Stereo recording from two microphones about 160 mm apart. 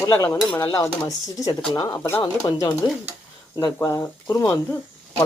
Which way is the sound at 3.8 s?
15° left (ahead or behind).